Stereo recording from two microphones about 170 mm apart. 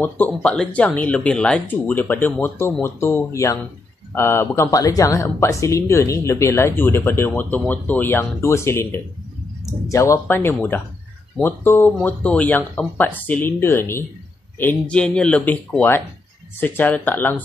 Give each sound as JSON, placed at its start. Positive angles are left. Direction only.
{"t": 0.0, "sound": "speech", "side_deg": 10}